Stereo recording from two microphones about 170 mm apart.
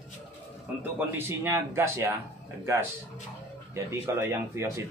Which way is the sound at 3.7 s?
15° right (ahead or behind).